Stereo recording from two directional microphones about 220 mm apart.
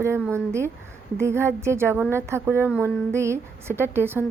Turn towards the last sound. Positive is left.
turn(degrees=-10)  # may be behind; listen again after turning